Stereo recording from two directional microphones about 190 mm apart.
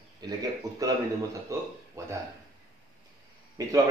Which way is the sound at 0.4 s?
20° right (ahead or behind).